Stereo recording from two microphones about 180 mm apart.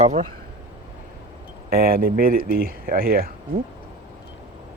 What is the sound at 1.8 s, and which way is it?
Speech, 55° right (ahead or behind).